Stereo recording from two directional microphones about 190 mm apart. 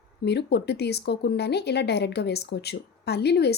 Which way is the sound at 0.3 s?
60° left (ahead or behind).